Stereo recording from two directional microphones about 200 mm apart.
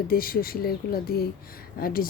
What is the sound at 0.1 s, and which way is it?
Speech, 45° left (ahead or behind).